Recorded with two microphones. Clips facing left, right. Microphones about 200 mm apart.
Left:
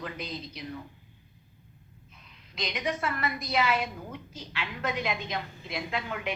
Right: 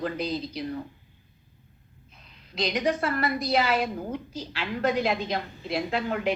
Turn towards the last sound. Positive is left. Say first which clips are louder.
# right 7 dB
turn(degrees=-40)  # may be behind; listen again after turning